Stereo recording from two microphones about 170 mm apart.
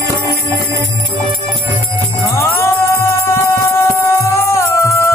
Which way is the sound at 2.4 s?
15° left (ahead or behind).